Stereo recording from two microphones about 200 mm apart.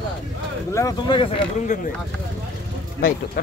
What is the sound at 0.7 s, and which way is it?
Speech, 20° left (ahead or behind).